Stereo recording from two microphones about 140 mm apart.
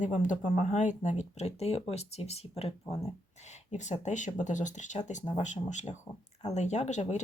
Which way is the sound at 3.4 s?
55° left (ahead or behind).